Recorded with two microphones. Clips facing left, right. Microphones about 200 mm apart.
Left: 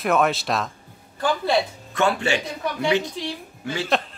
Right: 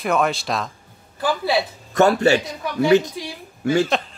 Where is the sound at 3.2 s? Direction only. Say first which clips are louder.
Left 1 dB; 10° right (ahead or behind).